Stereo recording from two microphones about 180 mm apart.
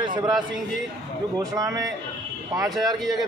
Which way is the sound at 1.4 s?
20° right (ahead or behind).